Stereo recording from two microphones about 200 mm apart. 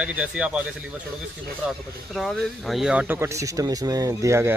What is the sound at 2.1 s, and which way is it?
Speech, centre (ahead or behind).